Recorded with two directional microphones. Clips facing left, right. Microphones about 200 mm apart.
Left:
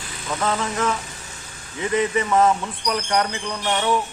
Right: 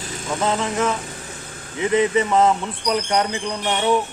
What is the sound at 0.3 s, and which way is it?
Speech, 15° right (ahead or behind).